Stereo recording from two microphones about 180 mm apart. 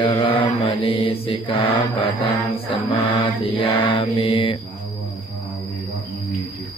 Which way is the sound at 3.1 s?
30° left (ahead or behind).